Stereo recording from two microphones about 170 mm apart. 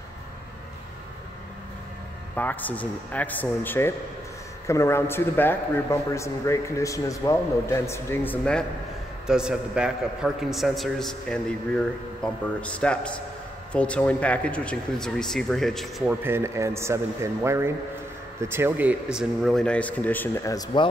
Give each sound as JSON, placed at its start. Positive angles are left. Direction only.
{"t": 2.3, "sound": "a man's voice", "side_deg": 10}
{"t": 9.3, "sound": "speech", "side_deg": -5}
{"t": 19.1, "sound": "a man's voice", "side_deg": 0}